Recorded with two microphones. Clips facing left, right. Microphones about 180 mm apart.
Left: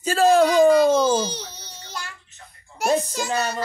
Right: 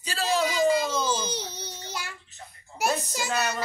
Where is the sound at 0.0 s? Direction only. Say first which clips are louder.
Left 10 dB; 50° left (ahead or behind).